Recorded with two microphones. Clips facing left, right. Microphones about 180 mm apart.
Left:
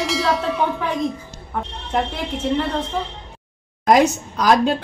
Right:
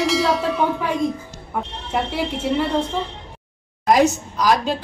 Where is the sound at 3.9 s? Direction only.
60° left (ahead or behind).